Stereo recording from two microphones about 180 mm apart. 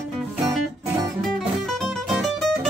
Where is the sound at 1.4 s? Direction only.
Centre (ahead or behind).